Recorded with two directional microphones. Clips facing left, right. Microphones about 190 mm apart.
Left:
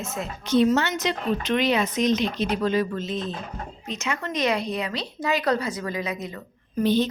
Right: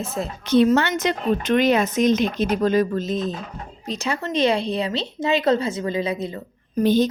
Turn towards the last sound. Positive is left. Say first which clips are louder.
# right 4 dB
turn(degrees=-40)  # may be behind; listen again after turning